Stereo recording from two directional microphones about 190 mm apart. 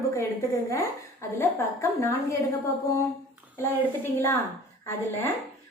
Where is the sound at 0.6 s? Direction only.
15° left (ahead or behind).